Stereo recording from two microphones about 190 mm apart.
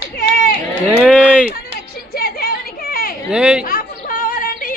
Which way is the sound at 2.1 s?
55° left (ahead or behind).